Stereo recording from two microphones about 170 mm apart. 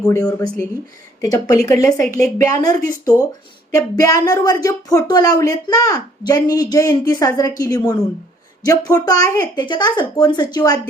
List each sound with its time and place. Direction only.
0.0 s a woman's voice: 20° left (ahead or behind)